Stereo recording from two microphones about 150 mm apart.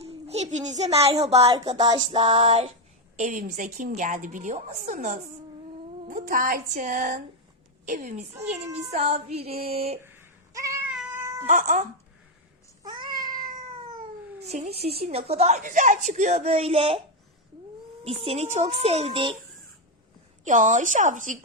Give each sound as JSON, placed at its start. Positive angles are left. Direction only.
{"t": 0.0, "sound": "a sound", "side_deg": -45}
{"t": 1.2, "sound": "a woman's voice", "side_deg": -40}
{"t": 1.8, "sound": "music", "side_deg": -30}
{"t": 3.2, "sound": "a woman's voice", "side_deg": -60}
{"t": 6.1, "sound": "a woman's voice", "side_deg": -65}
{"t": 9.6, "sound": "music", "side_deg": -40}
{"t": 10.0, "sound": "baby cry", "side_deg": -15}
{"t": 10.8, "sound": "cat", "side_deg": -10}
{"t": 11.4, "sound": "a woman's voice", "side_deg": -60}
{"t": 12.8, "sound": "cat", "side_deg": -30}
{"t": 14.4, "sound": "a woman's voice", "side_deg": -45}
{"t": 18.0, "sound": "a woman's voice", "side_deg": -40}
{"t": 20.4, "sound": "a woman's voice", "side_deg": -55}